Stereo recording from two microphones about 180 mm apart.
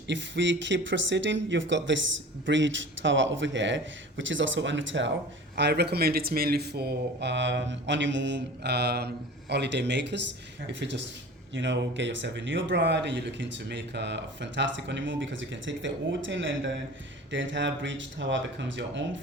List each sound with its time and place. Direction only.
0.1 s a man's voice: 80° right
5.5 s a man's voice: 70° right (ahead or behind); by 19.2 s 90° right